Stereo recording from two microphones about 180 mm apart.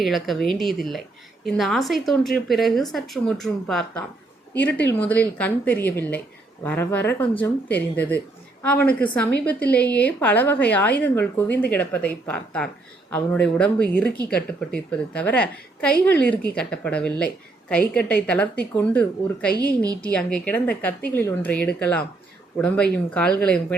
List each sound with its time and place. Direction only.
0.0 s speech: centre (ahead or behind)
19.5 s a woman's voice: 20° right (ahead or behind)
20.0 s speech: 5° left (ahead or behind)